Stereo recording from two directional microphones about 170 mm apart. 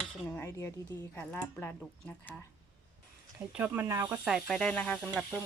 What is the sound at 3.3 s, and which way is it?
Speech, 10° right (ahead or behind).